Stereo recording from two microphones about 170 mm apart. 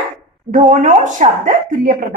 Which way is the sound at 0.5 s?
45° right (ahead or behind).